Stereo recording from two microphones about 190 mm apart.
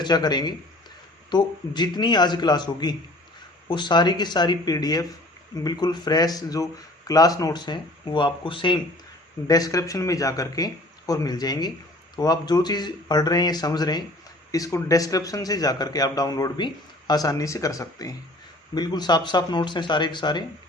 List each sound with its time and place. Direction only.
0.0 s a man's voice: 20° left (ahead or behind)